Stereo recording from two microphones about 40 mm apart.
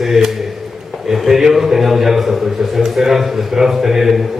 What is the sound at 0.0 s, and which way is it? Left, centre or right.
A man's voice, centre.